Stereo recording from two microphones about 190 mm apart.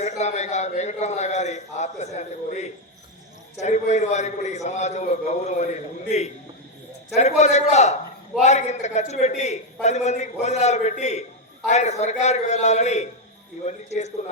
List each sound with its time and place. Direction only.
0.0 s a man's voice: 35° left (ahead or behind)